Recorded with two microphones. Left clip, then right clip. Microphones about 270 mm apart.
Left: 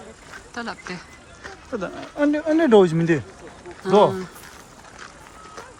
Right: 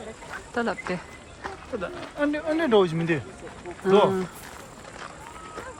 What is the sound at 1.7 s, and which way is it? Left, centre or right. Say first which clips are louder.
Speech: left 5 dB; left.